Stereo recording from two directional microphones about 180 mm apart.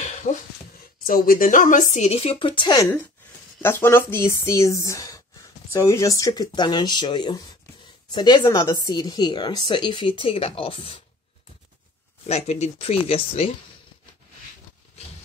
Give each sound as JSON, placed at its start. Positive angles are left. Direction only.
{"t": 0.0, "sound": "a sound", "side_deg": 40}
{"t": 1.0, "sound": "speech", "side_deg": 50}
{"t": 3.6, "sound": "speech", "side_deg": 10}
{"t": 12.3, "sound": "speech", "side_deg": 35}